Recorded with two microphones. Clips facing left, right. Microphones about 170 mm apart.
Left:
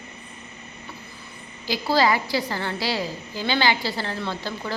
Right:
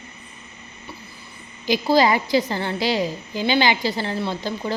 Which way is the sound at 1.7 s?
15° right (ahead or behind).